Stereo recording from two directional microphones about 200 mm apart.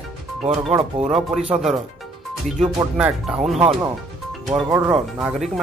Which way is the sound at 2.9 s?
5° right (ahead or behind).